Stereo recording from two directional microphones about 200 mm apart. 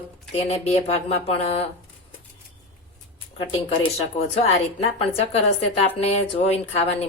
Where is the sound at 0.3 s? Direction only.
35° left (ahead or behind).